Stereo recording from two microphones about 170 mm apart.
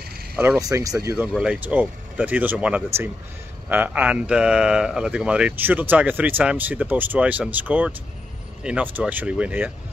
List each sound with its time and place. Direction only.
0.4 s speech: 15° right (ahead or behind)
1.1 s speech: 5° right (ahead or behind)